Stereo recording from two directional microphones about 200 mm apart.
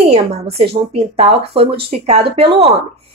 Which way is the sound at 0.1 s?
30° right (ahead or behind).